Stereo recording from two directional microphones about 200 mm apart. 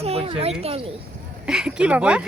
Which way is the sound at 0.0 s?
30° right (ahead or behind).